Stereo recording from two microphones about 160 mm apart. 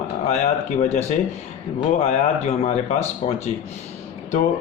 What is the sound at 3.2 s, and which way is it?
Speech, 45° left (ahead or behind).